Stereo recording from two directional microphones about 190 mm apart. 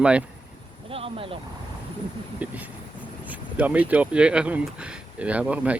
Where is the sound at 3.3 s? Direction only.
10° right (ahead or behind).